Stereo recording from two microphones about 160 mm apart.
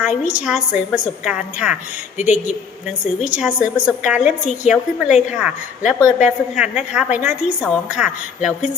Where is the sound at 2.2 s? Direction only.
50° left (ahead or behind).